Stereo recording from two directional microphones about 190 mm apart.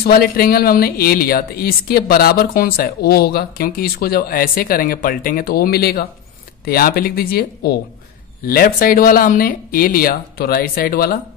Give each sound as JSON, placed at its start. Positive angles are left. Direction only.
{"t": 0.0, "sound": "speech", "side_deg": 55}